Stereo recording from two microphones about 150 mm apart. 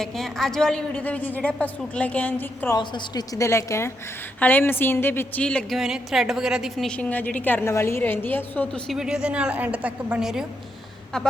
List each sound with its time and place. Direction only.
0.0 s a woman's voice: 5° left (ahead or behind)
2.7 s a woman's voice: 25° left (ahead or behind); by 9.0 s 10° left (ahead or behind)
9.0 s a woman's voice: 5° right (ahead or behind)